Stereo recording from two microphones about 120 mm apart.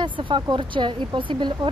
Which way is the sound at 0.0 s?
40° right (ahead or behind).